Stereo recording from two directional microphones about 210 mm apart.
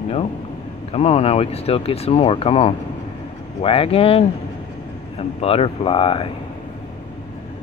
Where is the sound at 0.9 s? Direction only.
30° left (ahead or behind).